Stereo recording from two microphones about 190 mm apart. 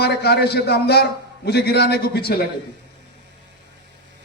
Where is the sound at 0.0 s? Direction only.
60° left (ahead or behind).